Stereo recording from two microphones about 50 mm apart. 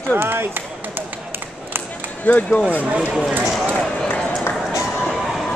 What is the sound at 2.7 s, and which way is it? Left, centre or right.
Speech, right.